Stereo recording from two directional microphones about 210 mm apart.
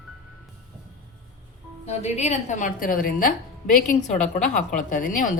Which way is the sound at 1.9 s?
30° left (ahead or behind).